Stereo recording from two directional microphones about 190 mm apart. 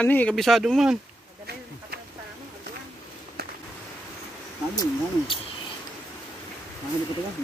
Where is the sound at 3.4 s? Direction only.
55° right (ahead or behind).